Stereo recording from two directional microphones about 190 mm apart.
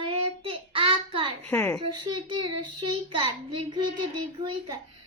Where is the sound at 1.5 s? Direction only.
10° left (ahead or behind).